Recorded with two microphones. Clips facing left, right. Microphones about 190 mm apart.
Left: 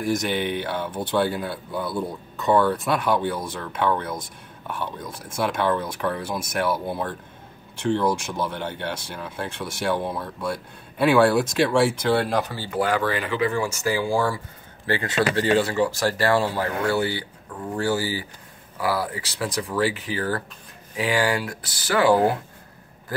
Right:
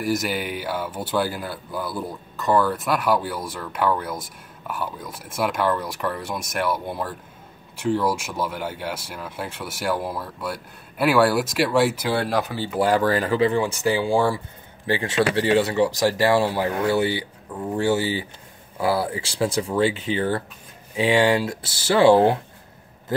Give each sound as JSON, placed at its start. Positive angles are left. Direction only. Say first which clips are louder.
{"t": 0.0, "sound": "speech", "louder": "left 1 dB", "side_deg": -5}
{"t": 12.8, "sound": "speech", "louder": "right 4 dB", "side_deg": -40}
{"t": 13.8, "sound": "speech", "louder": "right 2 dB", "side_deg": -20}